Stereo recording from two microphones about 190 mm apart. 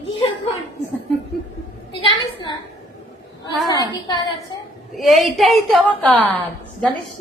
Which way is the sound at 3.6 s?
20° left (ahead or behind).